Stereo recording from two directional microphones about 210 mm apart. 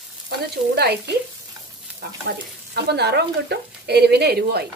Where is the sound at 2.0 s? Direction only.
50° right (ahead or behind).